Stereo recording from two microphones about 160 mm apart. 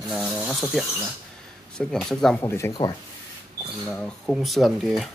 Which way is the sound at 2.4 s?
15° left (ahead or behind).